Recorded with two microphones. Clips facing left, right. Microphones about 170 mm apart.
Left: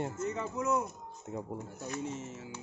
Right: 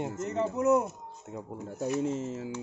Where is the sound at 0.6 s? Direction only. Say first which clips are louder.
Right 7 dB; 40° right (ahead or behind).